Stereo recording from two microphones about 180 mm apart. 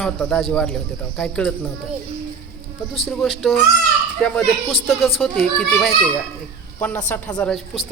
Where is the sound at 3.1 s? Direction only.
Centre (ahead or behind).